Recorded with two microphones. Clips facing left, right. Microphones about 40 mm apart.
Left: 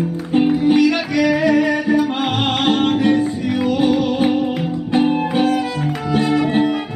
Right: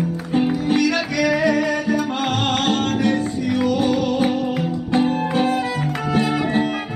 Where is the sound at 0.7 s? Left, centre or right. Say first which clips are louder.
Left 4 dB; centre.